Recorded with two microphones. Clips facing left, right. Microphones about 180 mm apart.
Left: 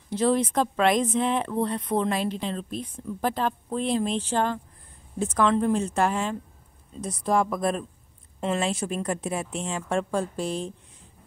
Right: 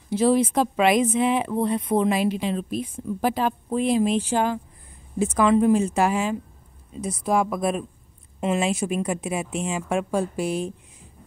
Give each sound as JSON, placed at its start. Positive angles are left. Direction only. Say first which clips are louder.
{"t": 0.1, "sound": "speech", "louder": "right 3 dB", "side_deg": -5}